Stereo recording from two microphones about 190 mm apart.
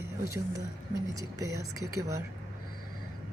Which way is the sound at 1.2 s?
20° right (ahead or behind).